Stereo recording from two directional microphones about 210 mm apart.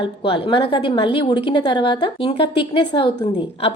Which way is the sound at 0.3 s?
25° left (ahead or behind).